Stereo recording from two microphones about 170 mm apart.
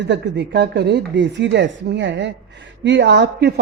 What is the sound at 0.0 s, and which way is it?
A woman's voice, 90° right.